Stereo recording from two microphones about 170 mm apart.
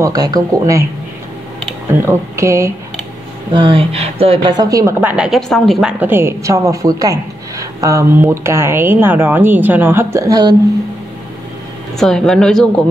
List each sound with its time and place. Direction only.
0.0 s speech: 20° right (ahead or behind)
1.9 s a woman's voice: 15° right (ahead or behind)
3.5 s speech: 30° right (ahead or behind)
5.0 s a woman's voice: 5° right (ahead or behind); by 10.5 s 20° right (ahead or behind)
12.0 s speech: 5° left (ahead or behind)